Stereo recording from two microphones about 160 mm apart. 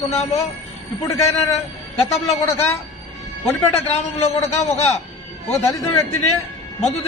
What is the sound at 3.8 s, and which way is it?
Speech, 40° left (ahead or behind).